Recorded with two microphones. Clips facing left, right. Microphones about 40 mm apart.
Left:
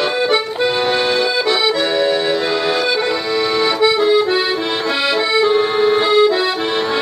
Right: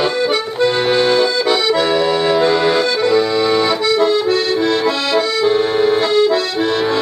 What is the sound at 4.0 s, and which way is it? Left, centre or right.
Accordion, centre.